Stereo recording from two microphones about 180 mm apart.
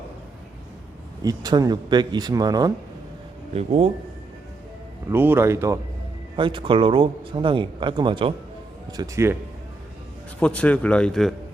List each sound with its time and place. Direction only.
1.2 s a man's voice: 20° right (ahead or behind)
3.5 s speech: 35° right (ahead or behind)
5.1 s speech: 10° right (ahead or behind)
6.3 s a man's voice: 25° right (ahead or behind)
10.4 s a man's voice: 5° left (ahead or behind)